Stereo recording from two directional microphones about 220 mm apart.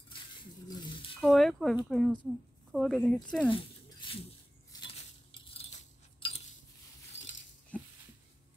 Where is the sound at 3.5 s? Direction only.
25° left (ahead or behind).